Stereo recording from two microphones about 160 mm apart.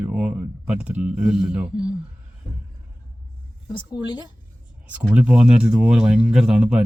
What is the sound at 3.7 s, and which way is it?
Speech, 30° left (ahead or behind).